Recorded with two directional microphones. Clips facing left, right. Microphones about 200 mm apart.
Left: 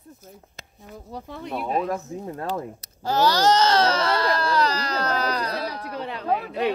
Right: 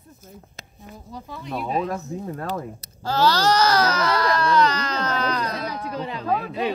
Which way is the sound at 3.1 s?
20° left (ahead or behind).